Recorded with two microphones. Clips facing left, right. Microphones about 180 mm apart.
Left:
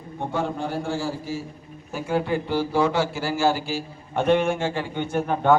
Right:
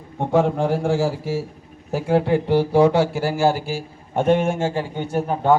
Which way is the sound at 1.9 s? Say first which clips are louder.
Right 6 dB; 70° right (ahead or behind).